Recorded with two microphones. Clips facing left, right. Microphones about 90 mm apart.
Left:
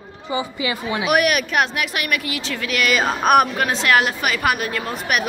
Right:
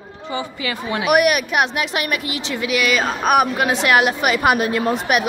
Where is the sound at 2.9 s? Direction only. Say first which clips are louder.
Left 3 dB; centre (ahead or behind).